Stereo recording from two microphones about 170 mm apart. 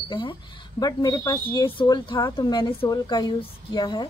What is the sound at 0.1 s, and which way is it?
A woman's voice, 30° left (ahead or behind).